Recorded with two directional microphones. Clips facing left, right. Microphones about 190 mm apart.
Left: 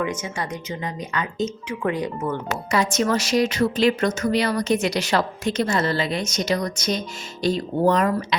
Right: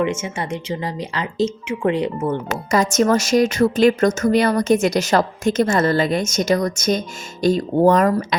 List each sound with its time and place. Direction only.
0.0 s speech: 25° right (ahead or behind)
2.6 s a woman's voice: 45° right (ahead or behind)